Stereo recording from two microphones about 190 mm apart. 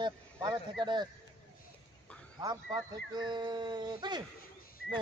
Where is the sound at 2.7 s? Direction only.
20° right (ahead or behind).